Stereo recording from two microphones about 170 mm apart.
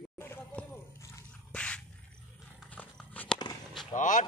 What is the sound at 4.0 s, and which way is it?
Speech, 50° left (ahead or behind).